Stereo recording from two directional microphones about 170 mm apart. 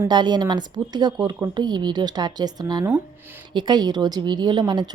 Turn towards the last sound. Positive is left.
turn(degrees=-25)  # may be behind; listen again after turning